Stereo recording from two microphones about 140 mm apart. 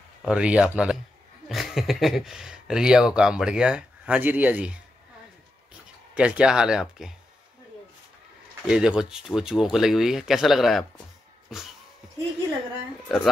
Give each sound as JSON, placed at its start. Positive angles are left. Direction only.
{"t": 0.2, "sound": "speech", "side_deg": -5}
{"t": 6.1, "sound": "speech", "side_deg": -10}
{"t": 8.6, "sound": "speech", "side_deg": -5}
{"t": 13.1, "sound": "speech", "side_deg": 0}